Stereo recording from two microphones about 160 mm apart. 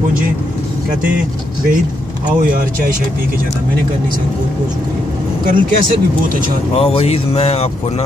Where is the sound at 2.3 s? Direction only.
60° right (ahead or behind).